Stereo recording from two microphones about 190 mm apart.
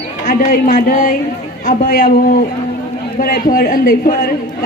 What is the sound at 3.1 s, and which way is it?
A man's voice, 50° left (ahead or behind).